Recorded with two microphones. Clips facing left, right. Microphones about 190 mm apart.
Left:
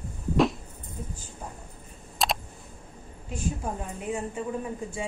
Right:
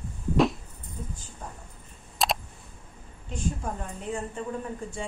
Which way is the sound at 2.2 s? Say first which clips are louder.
Right 1 dB; centre (ahead or behind).